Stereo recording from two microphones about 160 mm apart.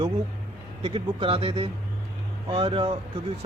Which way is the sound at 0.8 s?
35° right (ahead or behind).